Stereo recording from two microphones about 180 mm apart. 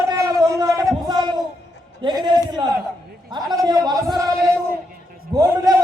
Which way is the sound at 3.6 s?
20° right (ahead or behind).